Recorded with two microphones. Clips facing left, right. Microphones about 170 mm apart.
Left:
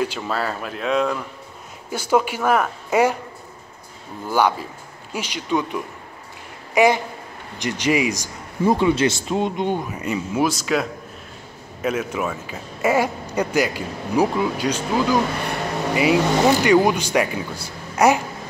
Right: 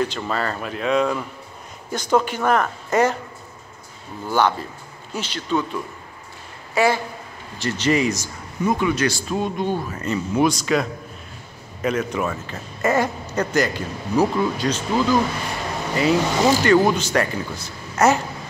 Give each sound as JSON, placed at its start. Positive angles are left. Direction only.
{"t": 0.0, "sound": "speech", "side_deg": 5}
{"t": 4.3, "sound": "speech", "side_deg": 10}
{"t": 8.6, "sound": "speech", "side_deg": 30}